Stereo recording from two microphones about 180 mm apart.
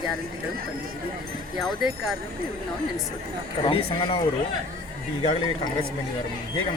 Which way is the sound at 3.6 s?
30° left (ahead or behind).